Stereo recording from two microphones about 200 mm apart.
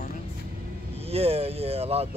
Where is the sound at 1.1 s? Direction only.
30° right (ahead or behind).